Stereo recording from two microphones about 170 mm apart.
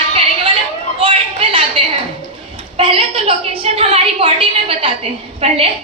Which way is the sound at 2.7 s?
30° right (ahead or behind).